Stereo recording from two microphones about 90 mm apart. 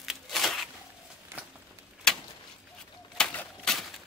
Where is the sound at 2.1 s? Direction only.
10° left (ahead or behind).